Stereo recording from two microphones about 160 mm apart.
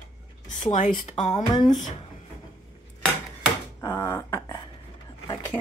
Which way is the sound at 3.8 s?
20° left (ahead or behind).